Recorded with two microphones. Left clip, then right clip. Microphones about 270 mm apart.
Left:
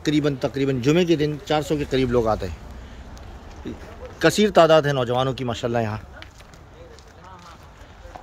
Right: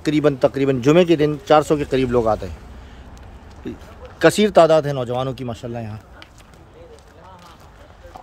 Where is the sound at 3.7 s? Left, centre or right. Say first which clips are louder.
Right 2 dB; centre.